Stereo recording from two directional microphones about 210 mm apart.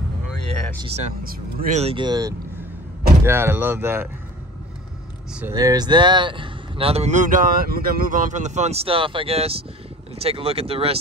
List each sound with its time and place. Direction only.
0.9 s speech: 35° right (ahead or behind); by 4.1 s 10° right (ahead or behind)
5.3 s speech: 10° right (ahead or behind); by 11.0 s 30° right (ahead or behind)